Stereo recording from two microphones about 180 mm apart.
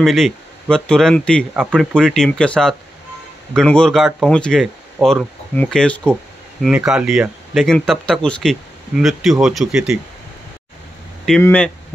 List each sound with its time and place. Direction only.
0.0 s speech: centre (ahead or behind)
6.7 s speech: 5° right (ahead or behind)
11.4 s speech: 10° left (ahead or behind)